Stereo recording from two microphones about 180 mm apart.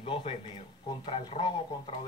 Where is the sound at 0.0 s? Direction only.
30° left (ahead or behind).